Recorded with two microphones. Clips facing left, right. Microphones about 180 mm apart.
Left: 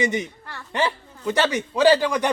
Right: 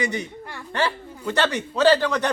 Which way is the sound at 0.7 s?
15° left (ahead or behind).